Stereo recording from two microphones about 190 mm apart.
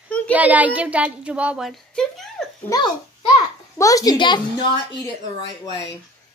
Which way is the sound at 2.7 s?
20° left (ahead or behind).